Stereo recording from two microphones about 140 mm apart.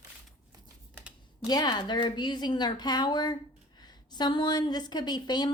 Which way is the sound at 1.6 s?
35° left (ahead or behind).